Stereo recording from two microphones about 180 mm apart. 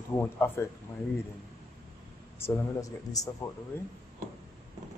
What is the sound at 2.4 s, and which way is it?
Speech, 20° left (ahead or behind).